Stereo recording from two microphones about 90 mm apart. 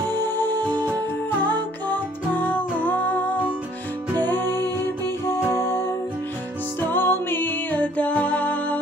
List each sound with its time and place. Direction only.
0.1 s music: 25° left (ahead or behind)